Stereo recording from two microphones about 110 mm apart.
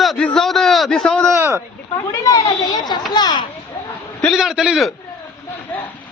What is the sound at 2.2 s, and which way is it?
Children playing, 30° left (ahead or behind).